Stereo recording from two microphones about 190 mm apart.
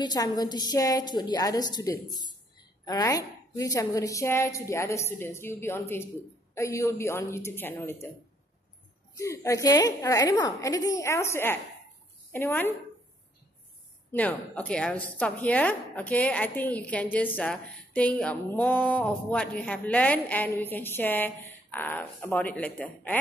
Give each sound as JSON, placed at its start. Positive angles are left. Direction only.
{"t": 0.0, "sound": "a woman's voice", "side_deg": 20}
{"t": 9.1, "sound": "a woman's voice", "side_deg": 15}
{"t": 14.1, "sound": "a woman's voice", "side_deg": 10}